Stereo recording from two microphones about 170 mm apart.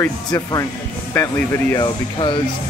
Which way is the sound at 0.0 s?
20° left (ahead or behind).